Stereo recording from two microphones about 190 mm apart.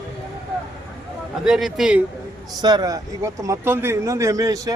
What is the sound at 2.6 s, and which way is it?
A man's voice, 20° right (ahead or behind).